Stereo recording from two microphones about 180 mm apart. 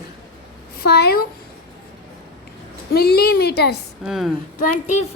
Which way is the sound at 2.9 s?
60° left (ahead or behind).